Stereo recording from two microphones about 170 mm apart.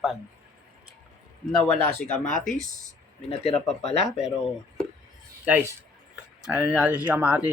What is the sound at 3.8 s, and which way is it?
Speech, 40° left (ahead or behind).